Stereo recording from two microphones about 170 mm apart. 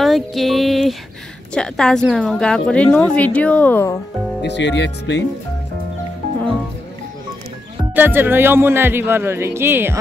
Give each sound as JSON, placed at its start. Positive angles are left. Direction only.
{"t": 0.0, "sound": "a woman's voice", "side_deg": 0}
{"t": 4.4, "sound": "speech", "side_deg": 90}
{"t": 7.9, "sound": "speech", "side_deg": -10}